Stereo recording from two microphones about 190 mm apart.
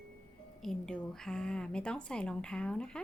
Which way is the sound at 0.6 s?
5° left (ahead or behind).